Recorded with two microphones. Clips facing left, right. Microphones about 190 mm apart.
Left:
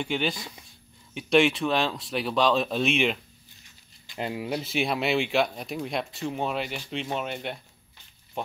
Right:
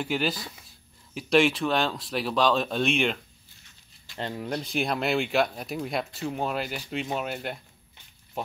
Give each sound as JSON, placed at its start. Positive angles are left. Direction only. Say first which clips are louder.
{"t": 0.0, "sound": "speech", "louder": "even", "side_deg": -5}